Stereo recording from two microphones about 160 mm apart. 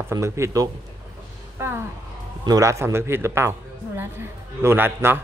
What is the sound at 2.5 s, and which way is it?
Speech, 20° right (ahead or behind).